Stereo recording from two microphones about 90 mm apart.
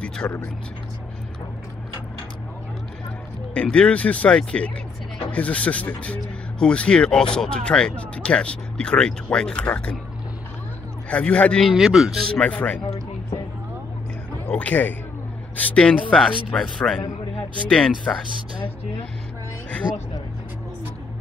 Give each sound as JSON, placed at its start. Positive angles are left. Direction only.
{"t": 0.2, "sound": "speech", "side_deg": 30}
{"t": 3.5, "sound": "speech", "side_deg": 10}
{"t": 11.1, "sound": "speech", "side_deg": 15}
{"t": 11.6, "sound": "a man's voice", "side_deg": -5}
{"t": 12.4, "sound": "speech", "side_deg": 15}
{"t": 14.5, "sound": "a man's voice", "side_deg": 15}
{"t": 19.8, "sound": "speech", "side_deg": -10}